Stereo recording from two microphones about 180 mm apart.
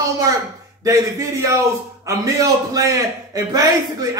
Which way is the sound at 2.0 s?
20° right (ahead or behind).